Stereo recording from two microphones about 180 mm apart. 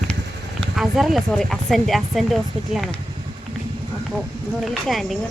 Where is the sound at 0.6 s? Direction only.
Centre (ahead or behind).